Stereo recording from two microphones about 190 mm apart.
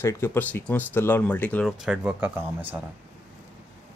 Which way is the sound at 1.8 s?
5° right (ahead or behind).